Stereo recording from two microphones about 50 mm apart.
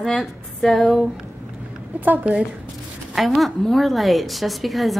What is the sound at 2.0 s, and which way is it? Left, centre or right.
Speech, right.